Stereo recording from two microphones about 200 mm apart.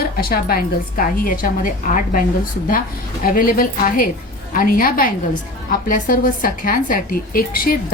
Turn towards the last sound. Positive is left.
turn(degrees=45)  # may be behind; listen again after turning